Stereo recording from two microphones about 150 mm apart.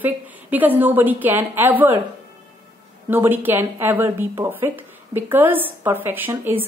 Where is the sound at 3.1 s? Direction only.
15° right (ahead or behind).